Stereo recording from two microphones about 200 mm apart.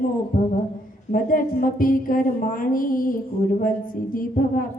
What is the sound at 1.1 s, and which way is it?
A woman's voice, 45° left (ahead or behind).